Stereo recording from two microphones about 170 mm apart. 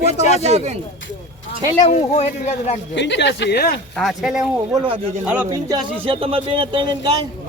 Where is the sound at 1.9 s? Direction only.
40° left (ahead or behind).